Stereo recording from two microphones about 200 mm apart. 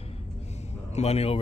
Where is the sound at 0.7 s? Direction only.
35° left (ahead or behind).